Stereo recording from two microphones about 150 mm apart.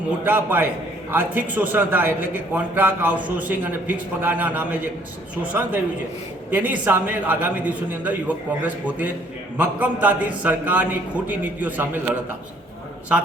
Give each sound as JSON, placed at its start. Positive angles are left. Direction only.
{"t": 0.3, "sound": "a man's voice", "side_deg": -10}